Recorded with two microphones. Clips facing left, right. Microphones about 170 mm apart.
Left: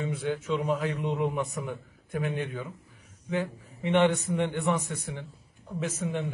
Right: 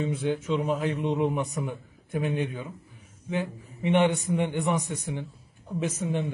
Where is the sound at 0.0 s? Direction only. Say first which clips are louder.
Right 3 dB; 20° right (ahead or behind).